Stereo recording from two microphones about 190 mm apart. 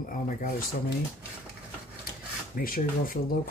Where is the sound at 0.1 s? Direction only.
45° left (ahead or behind).